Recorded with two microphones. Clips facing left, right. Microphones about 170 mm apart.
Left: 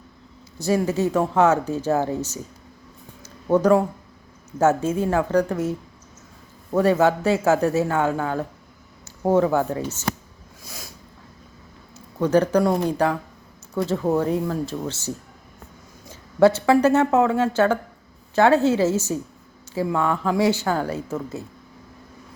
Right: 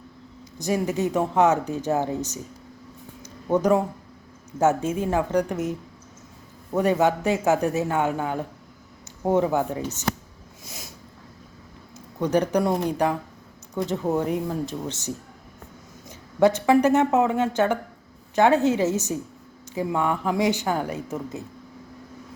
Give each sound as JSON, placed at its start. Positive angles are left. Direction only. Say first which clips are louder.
{"t": 0.6, "sound": "speech", "louder": "left 3 dB", "side_deg": -15}
{"t": 3.2, "sound": "a sound", "louder": "left 3 dB", "side_deg": -15}
{"t": 5.1, "sound": "speech", "louder": "left 2 dB", "side_deg": -15}
{"t": 6.7, "sound": "speech", "louder": "left 3 dB", "side_deg": -20}
{"t": 10.6, "sound": "a sound", "louder": "left 1 dB", "side_deg": -20}
{"t": 11.9, "sound": "speech", "louder": "left 3 dB", "side_deg": -15}
{"t": 13.7, "sound": "speech", "louder": "left 3 dB", "side_deg": -15}